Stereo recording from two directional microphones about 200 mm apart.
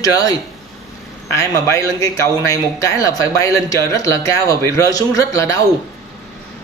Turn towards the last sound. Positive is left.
turn(degrees=15)  # may be behind; listen again after turning